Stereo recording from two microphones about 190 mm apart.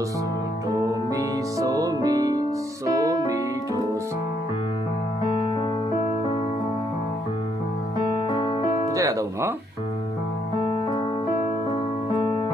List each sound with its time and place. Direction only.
1.1 s music: 20° right (ahead or behind)
8.3 s music: 25° left (ahead or behind)
8.9 s music: 15° right (ahead or behind)